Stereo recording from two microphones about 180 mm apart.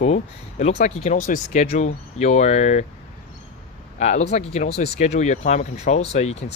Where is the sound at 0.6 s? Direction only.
40° left (ahead or behind).